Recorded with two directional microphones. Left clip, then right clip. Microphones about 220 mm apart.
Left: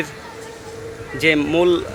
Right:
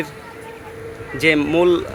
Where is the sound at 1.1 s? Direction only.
5° right (ahead or behind).